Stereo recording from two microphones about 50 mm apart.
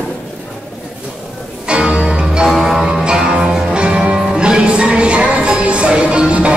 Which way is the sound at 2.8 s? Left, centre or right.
Centre.